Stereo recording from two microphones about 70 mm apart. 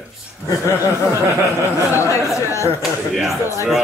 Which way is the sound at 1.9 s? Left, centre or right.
Left.